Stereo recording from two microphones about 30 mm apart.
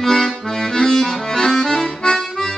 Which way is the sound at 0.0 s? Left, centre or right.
Centre.